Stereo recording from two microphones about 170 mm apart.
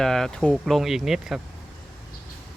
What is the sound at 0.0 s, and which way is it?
Speech, centre (ahead or behind).